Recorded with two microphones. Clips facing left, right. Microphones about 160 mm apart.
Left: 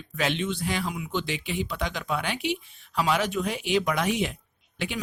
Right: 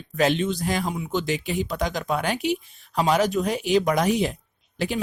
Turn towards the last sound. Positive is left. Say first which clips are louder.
# right 6 dB
turn(degrees=-35)  # may be behind; listen again after turning